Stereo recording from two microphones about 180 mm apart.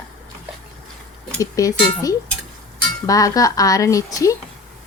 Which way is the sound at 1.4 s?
20° left (ahead or behind).